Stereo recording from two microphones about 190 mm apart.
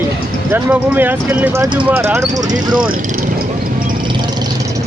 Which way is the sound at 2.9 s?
50° right (ahead or behind).